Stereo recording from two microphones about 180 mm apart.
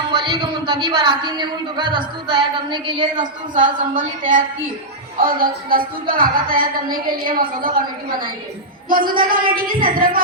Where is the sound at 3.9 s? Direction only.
50° right (ahead or behind).